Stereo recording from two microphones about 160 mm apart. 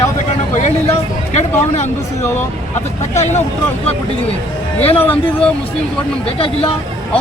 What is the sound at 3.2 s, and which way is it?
Speech, 45° left (ahead or behind).